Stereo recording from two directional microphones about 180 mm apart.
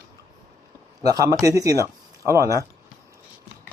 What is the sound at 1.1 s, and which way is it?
Speech, 20° right (ahead or behind).